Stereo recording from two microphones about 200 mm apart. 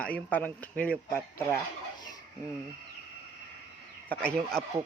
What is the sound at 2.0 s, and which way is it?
Dishes, 20° left (ahead or behind).